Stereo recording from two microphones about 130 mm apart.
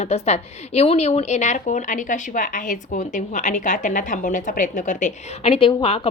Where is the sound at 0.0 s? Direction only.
55° left (ahead or behind).